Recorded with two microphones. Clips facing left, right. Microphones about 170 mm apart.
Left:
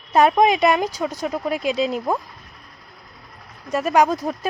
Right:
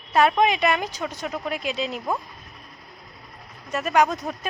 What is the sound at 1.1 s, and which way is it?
Speech, 35° left (ahead or behind).